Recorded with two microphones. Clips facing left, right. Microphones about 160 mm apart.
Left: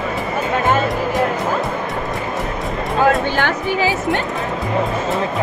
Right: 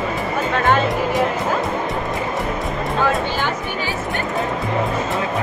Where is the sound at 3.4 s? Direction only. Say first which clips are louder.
Left 5 dB; 90° left.